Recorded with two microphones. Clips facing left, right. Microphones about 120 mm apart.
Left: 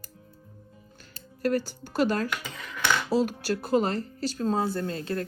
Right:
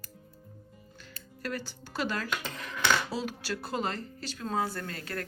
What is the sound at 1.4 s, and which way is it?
Speech, 45° left (ahead or behind).